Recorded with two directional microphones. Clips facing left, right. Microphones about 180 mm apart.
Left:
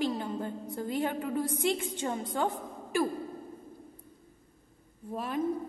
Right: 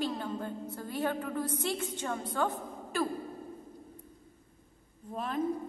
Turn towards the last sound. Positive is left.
turn(degrees=10)  # may be behind; listen again after turning